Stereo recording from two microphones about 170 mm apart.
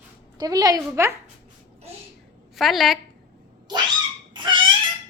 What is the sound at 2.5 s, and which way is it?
Speech, centre (ahead or behind).